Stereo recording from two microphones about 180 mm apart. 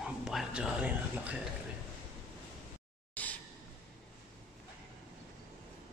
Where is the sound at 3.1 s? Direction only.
10° left (ahead or behind).